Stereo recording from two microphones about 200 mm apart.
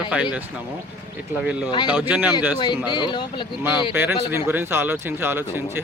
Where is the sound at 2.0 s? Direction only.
10° right (ahead or behind).